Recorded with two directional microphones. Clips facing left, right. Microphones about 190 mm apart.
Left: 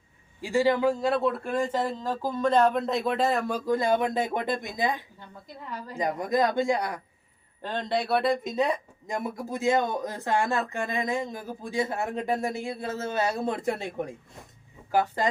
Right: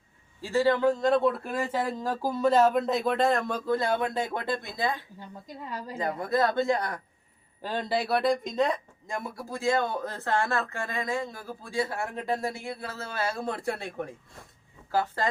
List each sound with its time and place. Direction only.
0.4 s speech: 15° left (ahead or behind)
5.7 s a woman's voice: 15° right (ahead or behind)
6.0 s speech: 15° left (ahead or behind)
7.6 s speech: 5° right (ahead or behind); by 15.3 s 15° left (ahead or behind)